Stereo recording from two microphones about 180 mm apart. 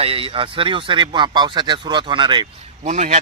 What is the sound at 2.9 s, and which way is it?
Speech, 40° right (ahead or behind).